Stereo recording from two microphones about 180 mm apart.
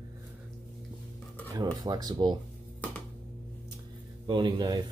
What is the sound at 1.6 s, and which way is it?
Speech, 20° right (ahead or behind).